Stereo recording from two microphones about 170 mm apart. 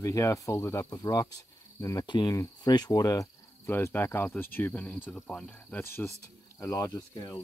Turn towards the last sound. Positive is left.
turn(degrees=20)  # may be behind; listen again after turning